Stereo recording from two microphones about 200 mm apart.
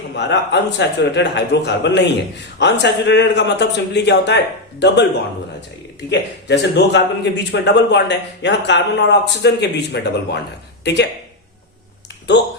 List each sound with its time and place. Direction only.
0.2 s a man's voice: 60° left (ahead or behind)
6.1 s a man's voice: 60° left (ahead or behind)